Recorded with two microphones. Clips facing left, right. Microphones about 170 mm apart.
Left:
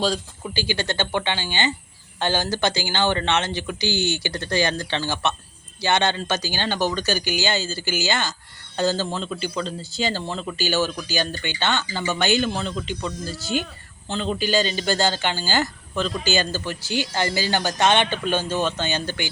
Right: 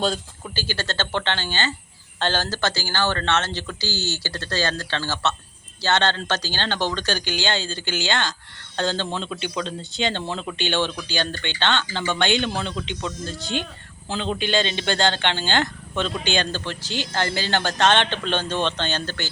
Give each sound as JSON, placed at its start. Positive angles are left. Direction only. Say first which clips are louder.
{"t": 0.5, "sound": "speech", "louder": "left 3 dB", "side_deg": 15}